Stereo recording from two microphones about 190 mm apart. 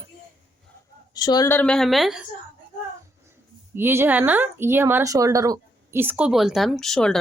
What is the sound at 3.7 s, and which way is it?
Speech, 10° right (ahead or behind).